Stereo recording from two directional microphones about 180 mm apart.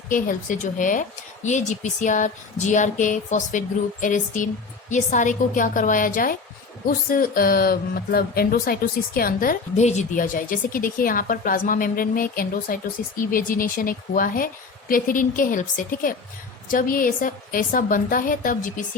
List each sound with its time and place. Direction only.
0.1 s speech: 50° left (ahead or behind)